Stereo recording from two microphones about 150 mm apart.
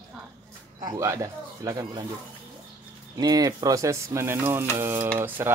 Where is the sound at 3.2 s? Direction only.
25° right (ahead or behind).